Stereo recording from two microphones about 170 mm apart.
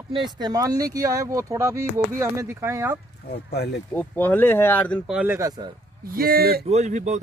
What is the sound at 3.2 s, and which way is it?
Speech, 80° left.